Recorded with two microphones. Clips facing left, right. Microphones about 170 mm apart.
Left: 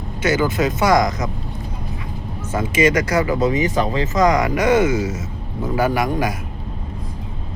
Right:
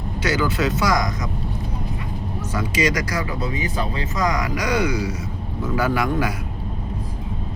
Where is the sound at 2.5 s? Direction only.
50° left (ahead or behind).